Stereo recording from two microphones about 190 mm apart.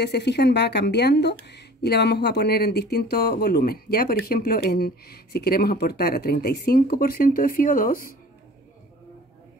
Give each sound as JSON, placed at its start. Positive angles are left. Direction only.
{"t": 0.0, "sound": "a woman's voice", "side_deg": 60}